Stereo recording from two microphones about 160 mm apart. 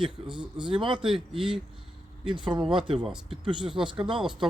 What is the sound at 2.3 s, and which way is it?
Speech, 30° right (ahead or behind).